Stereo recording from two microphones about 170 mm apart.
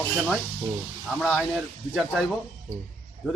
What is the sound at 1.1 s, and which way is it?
Speech, 5° left (ahead or behind).